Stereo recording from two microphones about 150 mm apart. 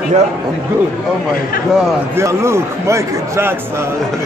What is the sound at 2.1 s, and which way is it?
A man's voice, 20° right (ahead or behind).